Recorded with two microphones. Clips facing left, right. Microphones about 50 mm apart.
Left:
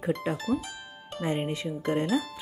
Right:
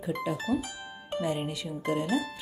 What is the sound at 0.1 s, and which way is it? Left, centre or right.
Speech, left.